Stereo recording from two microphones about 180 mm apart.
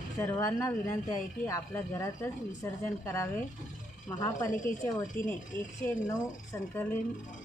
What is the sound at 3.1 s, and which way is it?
Speech, 15° left (ahead or behind).